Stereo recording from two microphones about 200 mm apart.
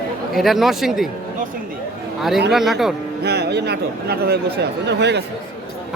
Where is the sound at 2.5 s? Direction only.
Centre (ahead or behind).